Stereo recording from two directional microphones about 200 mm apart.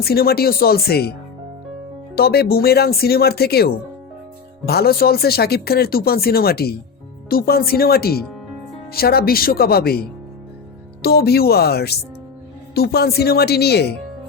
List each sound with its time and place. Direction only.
0.0 s speech: 50° left (ahead or behind)
2.1 s speech: 50° left (ahead or behind)